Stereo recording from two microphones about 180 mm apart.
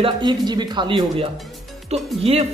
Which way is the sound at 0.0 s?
25° right (ahead or behind).